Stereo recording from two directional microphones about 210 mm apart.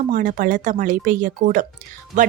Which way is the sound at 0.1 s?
40° right (ahead or behind).